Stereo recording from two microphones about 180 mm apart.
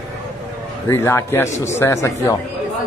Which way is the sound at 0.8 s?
15° left (ahead or behind).